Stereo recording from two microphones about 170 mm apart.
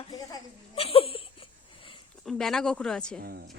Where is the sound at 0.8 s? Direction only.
35° left (ahead or behind).